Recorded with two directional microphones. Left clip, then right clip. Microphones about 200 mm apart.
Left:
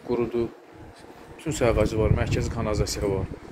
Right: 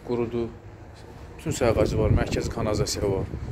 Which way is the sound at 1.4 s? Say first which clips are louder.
Even; 10° right (ahead or behind).